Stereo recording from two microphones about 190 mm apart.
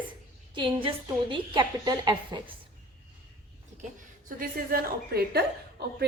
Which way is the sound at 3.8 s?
45° right (ahead or behind).